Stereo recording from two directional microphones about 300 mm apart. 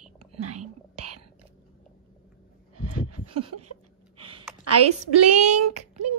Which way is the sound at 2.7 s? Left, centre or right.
Right.